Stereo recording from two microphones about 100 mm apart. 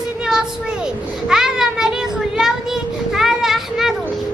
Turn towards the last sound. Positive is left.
turn(degrees=-5)  # may be behind; listen again after turning